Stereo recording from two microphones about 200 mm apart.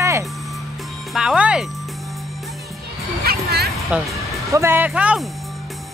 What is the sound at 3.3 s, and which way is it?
Music, 50° right (ahead or behind).